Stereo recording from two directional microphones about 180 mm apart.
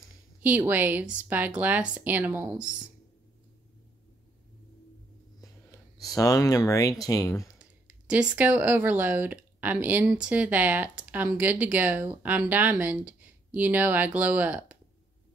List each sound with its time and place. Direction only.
0.4 s speech: 10° right (ahead or behind)
5.9 s speech: 20° left (ahead or behind)
8.1 s speech: 5° right (ahead or behind)